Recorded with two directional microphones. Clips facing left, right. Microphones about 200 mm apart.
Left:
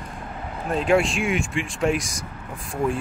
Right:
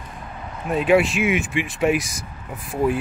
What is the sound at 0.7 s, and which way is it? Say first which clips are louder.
Speech: right 3 dB; 5° right (ahead or behind).